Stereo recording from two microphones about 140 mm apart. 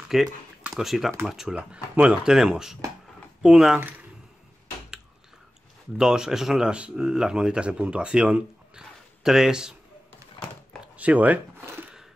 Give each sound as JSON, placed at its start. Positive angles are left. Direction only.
{"t": 0.1, "sound": "speech", "side_deg": -5}
{"t": 5.9, "sound": "speech", "side_deg": -5}
{"t": 11.0, "sound": "a sound", "side_deg": -10}